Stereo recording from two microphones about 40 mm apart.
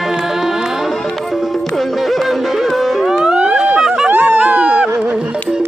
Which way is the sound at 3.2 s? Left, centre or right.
Right.